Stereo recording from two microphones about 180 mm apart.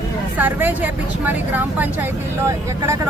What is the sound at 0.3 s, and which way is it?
Speech, 10° right (ahead or behind).